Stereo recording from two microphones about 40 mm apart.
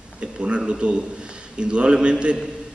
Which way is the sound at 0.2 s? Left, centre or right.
Right.